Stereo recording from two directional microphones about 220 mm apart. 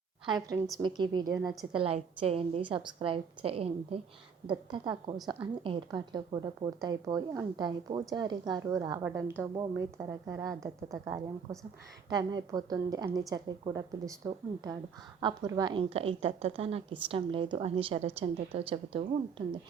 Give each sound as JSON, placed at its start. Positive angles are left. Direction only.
{"t": 0.3, "sound": "a woman's voice", "side_deg": -15}